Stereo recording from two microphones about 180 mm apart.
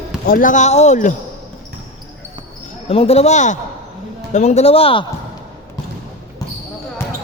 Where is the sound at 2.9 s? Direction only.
35° left (ahead or behind).